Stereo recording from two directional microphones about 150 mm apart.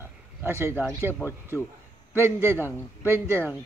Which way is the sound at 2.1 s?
15° right (ahead or behind).